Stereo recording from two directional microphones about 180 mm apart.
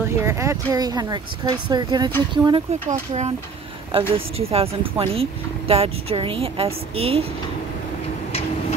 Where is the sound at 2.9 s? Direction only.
40° right (ahead or behind).